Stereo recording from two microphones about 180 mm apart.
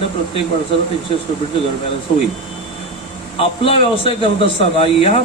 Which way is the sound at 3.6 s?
30° left (ahead or behind).